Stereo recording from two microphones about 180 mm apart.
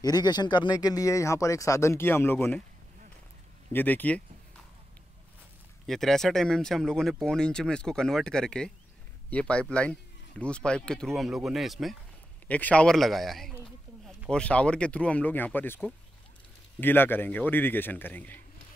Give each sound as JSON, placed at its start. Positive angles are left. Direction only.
{"t": 0.0, "sound": "speech", "side_deg": 20}
{"t": 3.7, "sound": "speech", "side_deg": 10}
{"t": 5.9, "sound": "speech", "side_deg": 0}